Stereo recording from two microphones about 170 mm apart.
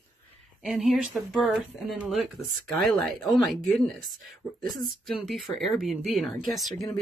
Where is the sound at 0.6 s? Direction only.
5° right (ahead or behind).